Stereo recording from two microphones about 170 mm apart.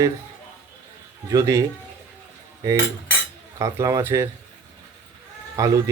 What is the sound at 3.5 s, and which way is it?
Speech, 20° right (ahead or behind).